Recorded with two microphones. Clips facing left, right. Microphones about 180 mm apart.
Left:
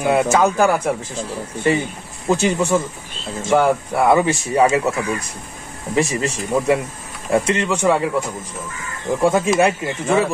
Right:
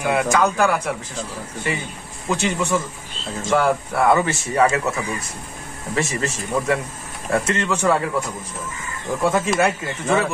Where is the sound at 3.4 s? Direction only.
20° left (ahead or behind).